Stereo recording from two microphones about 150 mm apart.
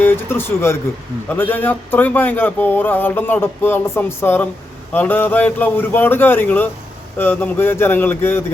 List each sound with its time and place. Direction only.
0.0 s speech: 15° left (ahead or behind)